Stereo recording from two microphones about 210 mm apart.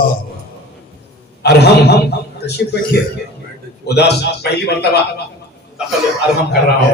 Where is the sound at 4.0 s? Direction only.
50° left (ahead or behind).